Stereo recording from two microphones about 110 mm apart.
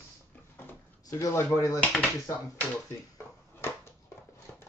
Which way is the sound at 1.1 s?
30° left (ahead or behind).